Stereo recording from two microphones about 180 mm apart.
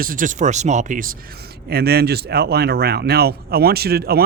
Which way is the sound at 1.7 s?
60° right (ahead or behind).